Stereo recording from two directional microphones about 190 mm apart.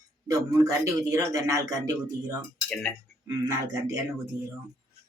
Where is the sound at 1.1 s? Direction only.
15° right (ahead or behind).